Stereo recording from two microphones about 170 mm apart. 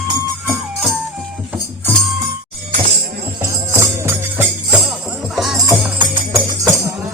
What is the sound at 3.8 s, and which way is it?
Music, 15° right (ahead or behind).